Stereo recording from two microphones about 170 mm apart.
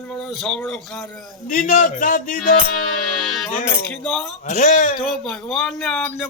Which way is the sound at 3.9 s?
5° left (ahead or behind).